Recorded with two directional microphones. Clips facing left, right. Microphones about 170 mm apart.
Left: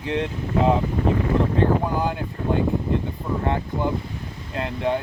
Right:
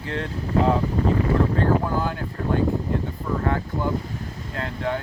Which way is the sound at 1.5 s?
20° left (ahead or behind).